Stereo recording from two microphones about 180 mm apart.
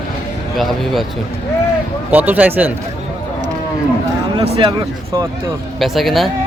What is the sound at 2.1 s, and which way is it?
Speech, 10° right (ahead or behind).